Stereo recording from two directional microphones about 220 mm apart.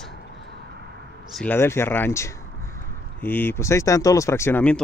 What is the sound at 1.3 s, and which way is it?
Speech, 5° left (ahead or behind).